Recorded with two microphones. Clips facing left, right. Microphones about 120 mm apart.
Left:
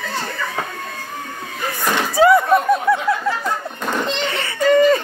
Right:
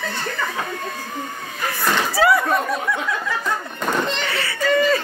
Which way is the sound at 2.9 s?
25° left (ahead or behind).